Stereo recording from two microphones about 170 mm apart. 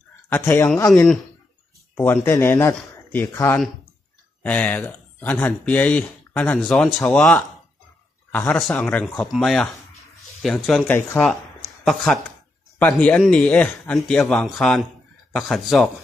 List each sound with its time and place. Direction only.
0.3 s speech: 15° left (ahead or behind)
2.2 s a man's voice: 15° left (ahead or behind)